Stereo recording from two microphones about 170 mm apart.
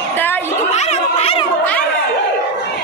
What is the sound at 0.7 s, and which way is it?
Cat, 35° left (ahead or behind).